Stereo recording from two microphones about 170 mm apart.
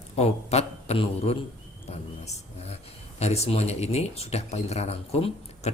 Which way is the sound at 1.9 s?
40° left (ahead or behind).